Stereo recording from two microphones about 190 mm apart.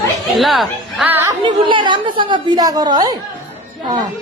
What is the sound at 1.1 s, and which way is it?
A woman's voice, 15° right (ahead or behind).